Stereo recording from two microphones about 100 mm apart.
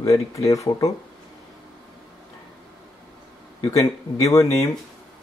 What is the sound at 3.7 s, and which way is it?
Speech, 35° left (ahead or behind).